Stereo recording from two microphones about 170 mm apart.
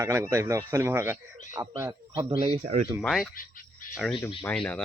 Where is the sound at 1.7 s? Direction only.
25° right (ahead or behind).